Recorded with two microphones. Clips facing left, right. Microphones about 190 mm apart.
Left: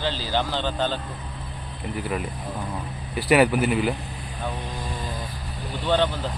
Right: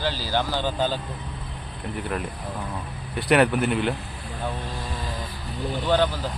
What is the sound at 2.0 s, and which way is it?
Speech, 5° left (ahead or behind).